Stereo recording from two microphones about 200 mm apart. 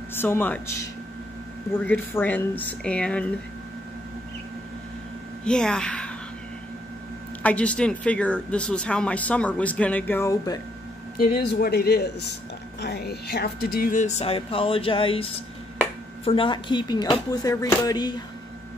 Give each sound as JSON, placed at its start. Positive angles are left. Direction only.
{"t": 0.1, "sound": "speech", "side_deg": 10}
{"t": 5.4, "sound": "a woman's voice", "side_deg": 5}
{"t": 7.4, "sound": "speech", "side_deg": 5}
{"t": 11.1, "sound": "speech", "side_deg": 45}